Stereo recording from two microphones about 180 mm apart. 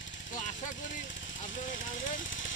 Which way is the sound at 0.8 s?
90° left.